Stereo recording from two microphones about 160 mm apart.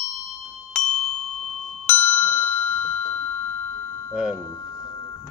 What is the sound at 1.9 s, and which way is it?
Music, 10° left (ahead or behind).